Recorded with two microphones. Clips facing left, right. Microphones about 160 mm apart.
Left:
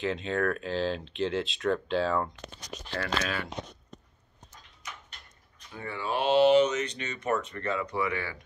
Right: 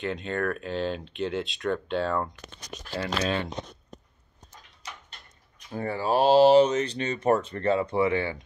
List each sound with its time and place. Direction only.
0.0 s speech: centre (ahead or behind)
3.0 s speech: 25° right (ahead or behind)
5.7 s speech: 40° right (ahead or behind)